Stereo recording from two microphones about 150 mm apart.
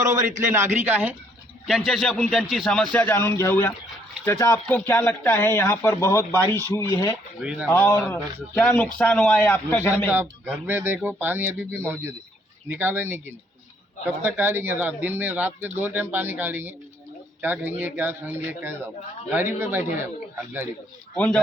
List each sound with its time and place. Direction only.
0.0 s a man's voice: 20° right (ahead or behind); by 7.2 s 20° left (ahead or behind)
7.4 s speech: 5° right (ahead or behind)
7.7 s speech: 15° left (ahead or behind)
10.1 s speech: 10° right (ahead or behind)